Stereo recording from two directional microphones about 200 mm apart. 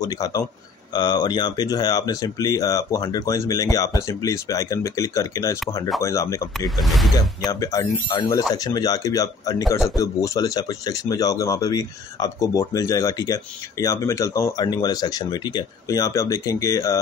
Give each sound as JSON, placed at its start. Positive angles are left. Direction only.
{"t": 0.0, "sound": "speech", "side_deg": 20}
{"t": 6.8, "sound": "speech", "side_deg": 0}
{"t": 7.2, "sound": "speech", "side_deg": 15}